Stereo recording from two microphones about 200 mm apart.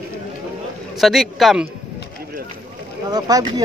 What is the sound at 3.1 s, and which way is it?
Speech, 20° right (ahead or behind).